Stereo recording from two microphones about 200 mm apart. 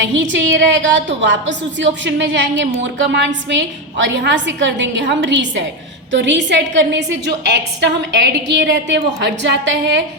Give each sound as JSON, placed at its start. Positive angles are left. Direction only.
{"t": 0.0, "sound": "a woman's voice", "side_deg": -65}
{"t": 8.1, "sound": "a woman's voice", "side_deg": -60}